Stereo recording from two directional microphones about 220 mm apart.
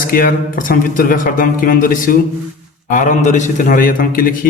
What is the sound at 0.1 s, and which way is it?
Speech, 40° left (ahead or behind).